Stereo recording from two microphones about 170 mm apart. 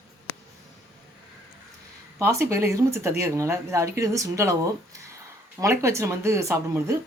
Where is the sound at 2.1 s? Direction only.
15° right (ahead or behind).